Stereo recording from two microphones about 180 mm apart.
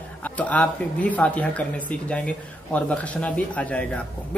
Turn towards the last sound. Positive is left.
turn(degrees=5)  # may be behind; listen again after turning